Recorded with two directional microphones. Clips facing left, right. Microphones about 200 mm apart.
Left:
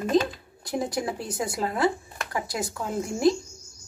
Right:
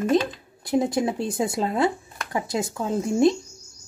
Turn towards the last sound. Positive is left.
turn(degrees=-25)  # may be behind; listen again after turning